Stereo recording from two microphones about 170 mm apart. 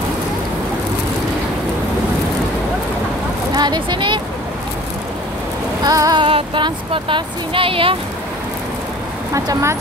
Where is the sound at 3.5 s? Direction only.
25° right (ahead or behind).